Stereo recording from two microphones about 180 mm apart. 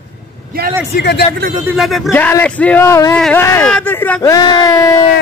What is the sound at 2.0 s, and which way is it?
Speech, 10° left (ahead or behind).